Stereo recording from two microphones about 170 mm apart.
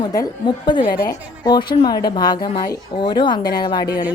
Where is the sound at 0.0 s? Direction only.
25° left (ahead or behind).